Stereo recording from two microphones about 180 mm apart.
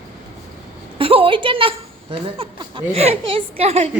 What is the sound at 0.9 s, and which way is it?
A woman's voice, 30° right (ahead or behind).